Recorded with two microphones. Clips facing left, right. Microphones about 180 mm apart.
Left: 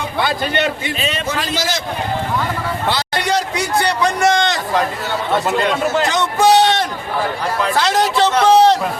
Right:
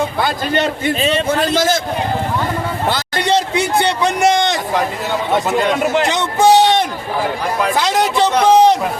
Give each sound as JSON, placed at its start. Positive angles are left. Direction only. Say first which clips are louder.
{"t": 0.2, "sound": "a man's voice", "louder": "left 3 dB", "side_deg": -40}
{"t": 1.3, "sound": "a man's voice", "louder": "right 6 dB", "side_deg": -50}
{"t": 3.2, "sound": "a sound", "louder": "right 5 dB", "side_deg": -25}
{"t": 5.5, "sound": "a man's voice", "louder": "right 2 dB", "side_deg": -10}